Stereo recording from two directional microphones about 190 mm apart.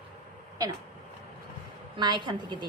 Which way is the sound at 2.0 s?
25° right (ahead or behind).